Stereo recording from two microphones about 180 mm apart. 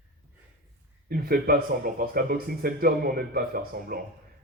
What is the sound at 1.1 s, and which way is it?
Speech, 55° right (ahead or behind).